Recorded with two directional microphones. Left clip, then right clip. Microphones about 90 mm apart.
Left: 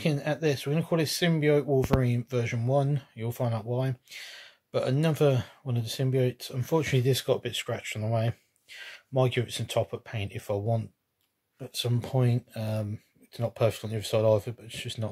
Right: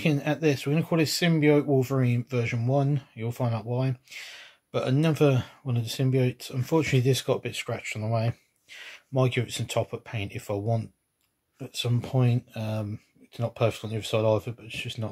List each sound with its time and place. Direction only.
0.0 s speech: 20° left (ahead or behind); by 15.0 s 35° left (ahead or behind)